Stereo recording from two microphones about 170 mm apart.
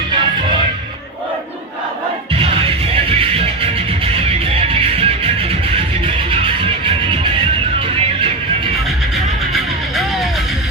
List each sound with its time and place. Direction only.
2.3 s music: 35° right (ahead or behind)
9.5 s music: centre (ahead or behind)